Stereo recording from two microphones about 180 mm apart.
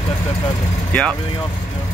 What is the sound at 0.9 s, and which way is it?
Speech, 5° left (ahead or behind).